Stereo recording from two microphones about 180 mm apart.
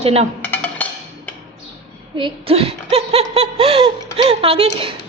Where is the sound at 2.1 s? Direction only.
30° right (ahead or behind).